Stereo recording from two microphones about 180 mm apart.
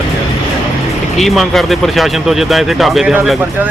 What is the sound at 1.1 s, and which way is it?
Speech, centre (ahead or behind).